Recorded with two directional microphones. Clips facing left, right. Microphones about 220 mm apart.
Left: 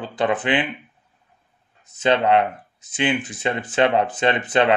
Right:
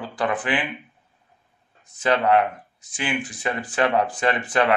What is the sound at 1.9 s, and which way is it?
Speech, 20° left (ahead or behind).